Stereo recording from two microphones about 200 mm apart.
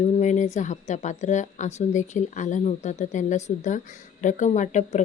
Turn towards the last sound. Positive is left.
turn(degrees=35)  # may be behind; listen again after turning